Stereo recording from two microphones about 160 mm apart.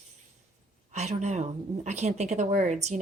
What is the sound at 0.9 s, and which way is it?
A woman's voice, 45° right (ahead or behind).